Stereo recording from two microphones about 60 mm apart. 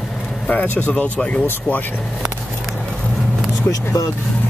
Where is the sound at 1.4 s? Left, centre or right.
Left.